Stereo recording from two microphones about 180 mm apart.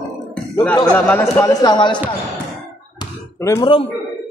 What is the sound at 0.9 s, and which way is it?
A man's voice, 10° left (ahead or behind).